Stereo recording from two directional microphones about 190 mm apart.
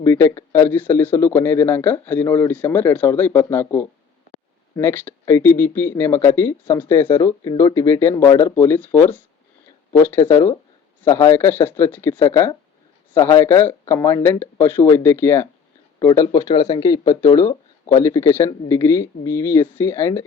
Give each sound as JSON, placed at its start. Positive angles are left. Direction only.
{"t": 0.0, "sound": "speech", "side_deg": 15}